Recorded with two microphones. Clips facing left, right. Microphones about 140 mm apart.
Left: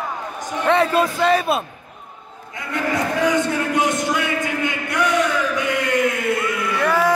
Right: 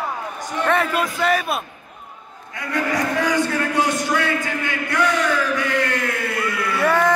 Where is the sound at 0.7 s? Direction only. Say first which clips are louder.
Left 4 dB; 25° left (ahead or behind).